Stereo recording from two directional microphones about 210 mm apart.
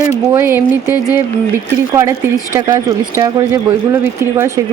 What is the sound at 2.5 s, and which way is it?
A woman's voice, 15° right (ahead or behind).